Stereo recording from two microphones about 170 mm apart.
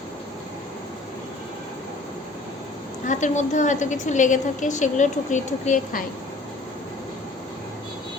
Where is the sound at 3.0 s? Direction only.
45° left (ahead or behind).